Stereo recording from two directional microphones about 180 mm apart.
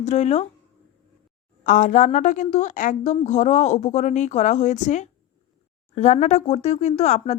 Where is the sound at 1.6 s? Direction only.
45° left (ahead or behind).